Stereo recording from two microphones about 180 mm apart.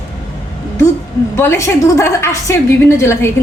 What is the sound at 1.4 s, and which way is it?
A woman's voice, 15° left (ahead or behind).